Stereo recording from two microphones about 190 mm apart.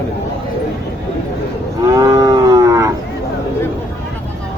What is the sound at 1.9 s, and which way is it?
Cattle, 20° right (ahead or behind).